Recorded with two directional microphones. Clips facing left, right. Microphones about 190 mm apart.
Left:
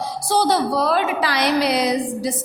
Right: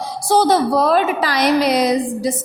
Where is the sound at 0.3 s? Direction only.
50° right (ahead or behind).